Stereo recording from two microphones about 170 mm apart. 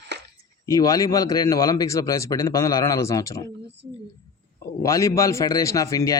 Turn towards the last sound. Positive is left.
turn(degrees=20)  # may be behind; listen again after turning